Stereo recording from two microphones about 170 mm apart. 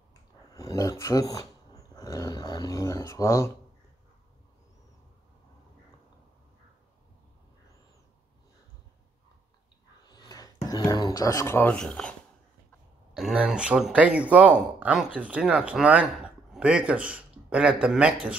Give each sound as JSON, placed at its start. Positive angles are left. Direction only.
{"t": 0.6, "sound": "speech", "side_deg": 20}
{"t": 10.0, "sound": "speech", "side_deg": 25}
{"t": 13.1, "sound": "speech", "side_deg": -5}